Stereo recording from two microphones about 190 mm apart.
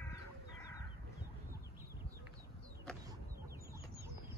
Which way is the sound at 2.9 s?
5° left (ahead or behind).